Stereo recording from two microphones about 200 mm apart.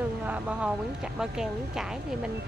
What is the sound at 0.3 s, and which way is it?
Speech, 5° right (ahead or behind).